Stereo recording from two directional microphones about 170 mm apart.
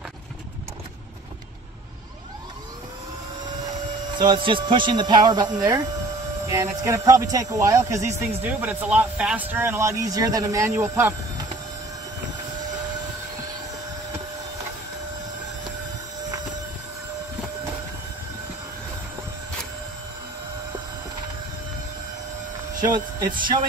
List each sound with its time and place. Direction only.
4.2 s a man's voice: 25° right (ahead or behind)
22.8 s speech: 20° right (ahead or behind)